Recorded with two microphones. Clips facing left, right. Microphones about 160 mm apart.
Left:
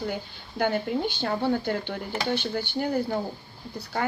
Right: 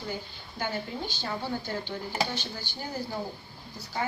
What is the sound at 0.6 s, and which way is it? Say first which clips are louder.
Speech: left 8 dB; 60° left (ahead or behind).